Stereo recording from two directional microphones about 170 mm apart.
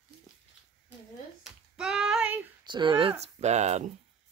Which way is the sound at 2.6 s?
25° right (ahead or behind).